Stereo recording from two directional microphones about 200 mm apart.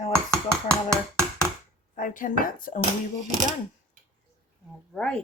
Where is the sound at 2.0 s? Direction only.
40° left (ahead or behind).